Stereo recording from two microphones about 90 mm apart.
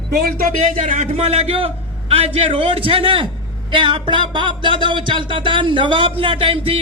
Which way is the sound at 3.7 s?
65° right (ahead or behind).